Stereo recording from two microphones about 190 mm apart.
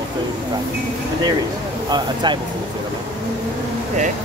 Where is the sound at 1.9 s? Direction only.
20° right (ahead or behind).